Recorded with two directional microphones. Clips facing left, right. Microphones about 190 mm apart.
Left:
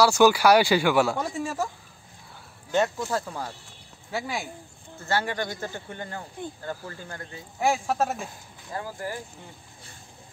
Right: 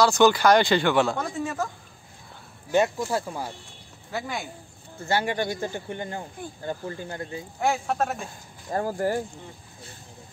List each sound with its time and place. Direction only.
0.0 s speech: 10° left (ahead or behind)
2.7 s speech: 15° right (ahead or behind)
4.1 s speech: 5° left (ahead or behind)
5.0 s speech: 15° right (ahead or behind)
7.6 s speech: 5° left (ahead or behind)
8.6 s speech: 45° right (ahead or behind)